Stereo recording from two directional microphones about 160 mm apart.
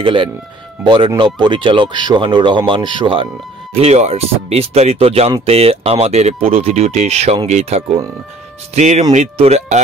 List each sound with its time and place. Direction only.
0.0 s speech: 35° right (ahead or behind)